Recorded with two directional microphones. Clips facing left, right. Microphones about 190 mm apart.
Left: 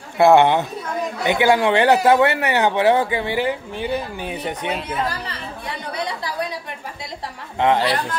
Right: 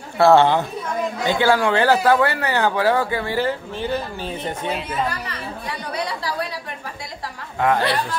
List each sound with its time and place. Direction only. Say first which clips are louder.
0.2 s speech: left 1 dB; 15° left (ahead or behind)
5.2 s chatter: right 1 dB; 20° left (ahead or behind)
7.5 s speech: left 2 dB; 25° left (ahead or behind)